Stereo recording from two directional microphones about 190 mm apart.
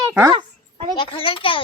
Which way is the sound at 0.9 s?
25° left (ahead or behind).